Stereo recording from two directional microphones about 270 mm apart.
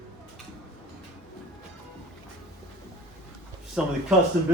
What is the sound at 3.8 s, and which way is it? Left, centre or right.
Speech, centre.